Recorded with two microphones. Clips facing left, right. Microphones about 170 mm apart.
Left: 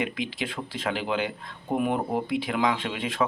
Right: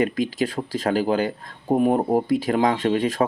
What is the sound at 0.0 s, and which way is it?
Speech, 40° right (ahead or behind).